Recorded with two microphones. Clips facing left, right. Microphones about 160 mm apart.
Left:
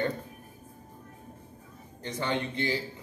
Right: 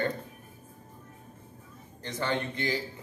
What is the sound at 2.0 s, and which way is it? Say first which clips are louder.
Speech: even; 15° left (ahead or behind).